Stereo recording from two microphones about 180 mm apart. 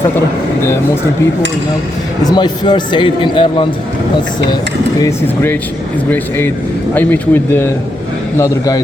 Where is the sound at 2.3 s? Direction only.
25° left (ahead or behind).